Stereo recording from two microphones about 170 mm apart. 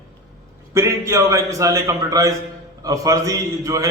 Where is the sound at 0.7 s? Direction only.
15° right (ahead or behind).